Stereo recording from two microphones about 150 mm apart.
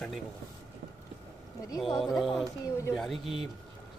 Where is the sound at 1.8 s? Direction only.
Centre (ahead or behind).